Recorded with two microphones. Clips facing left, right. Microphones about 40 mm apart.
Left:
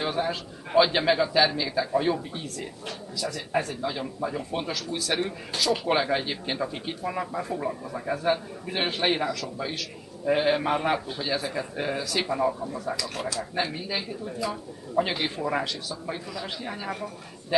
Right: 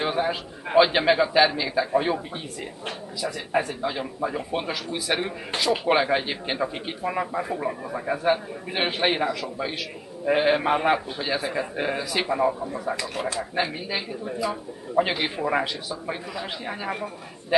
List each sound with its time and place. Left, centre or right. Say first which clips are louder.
0.0 s a man's voice: right 3 dB; centre